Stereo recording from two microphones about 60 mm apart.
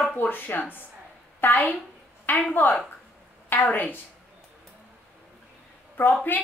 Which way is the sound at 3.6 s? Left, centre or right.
Left.